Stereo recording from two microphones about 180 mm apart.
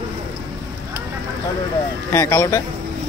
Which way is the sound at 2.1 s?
15° left (ahead or behind).